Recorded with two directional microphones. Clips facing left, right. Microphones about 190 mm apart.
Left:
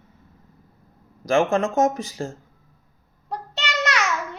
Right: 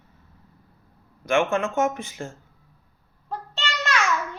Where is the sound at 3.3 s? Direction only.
70° left (ahead or behind).